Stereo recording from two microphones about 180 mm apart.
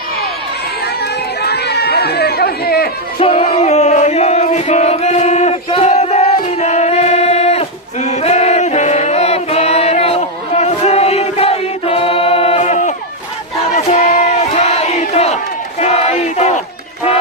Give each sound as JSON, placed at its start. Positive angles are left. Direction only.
{"t": 1.4, "sound": "chatter", "side_deg": 65}
{"t": 3.2, "sound": "music", "side_deg": 30}
{"t": 13.7, "sound": "battle cry", "side_deg": 40}